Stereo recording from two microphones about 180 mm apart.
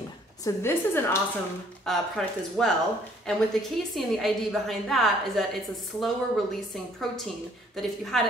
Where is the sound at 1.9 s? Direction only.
5° left (ahead or behind).